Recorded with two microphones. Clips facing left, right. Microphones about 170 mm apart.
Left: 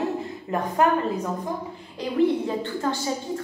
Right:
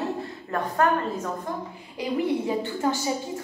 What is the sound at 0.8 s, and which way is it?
Speech, 15° left (ahead or behind).